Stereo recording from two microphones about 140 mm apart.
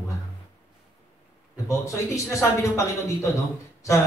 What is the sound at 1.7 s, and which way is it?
A woman's voice, 20° left (ahead or behind).